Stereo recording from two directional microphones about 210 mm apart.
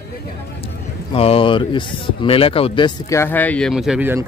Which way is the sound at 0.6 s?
25° left (ahead or behind).